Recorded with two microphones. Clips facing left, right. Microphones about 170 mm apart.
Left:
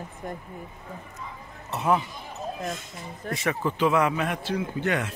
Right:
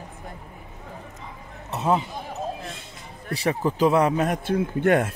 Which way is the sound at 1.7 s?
20° right (ahead or behind).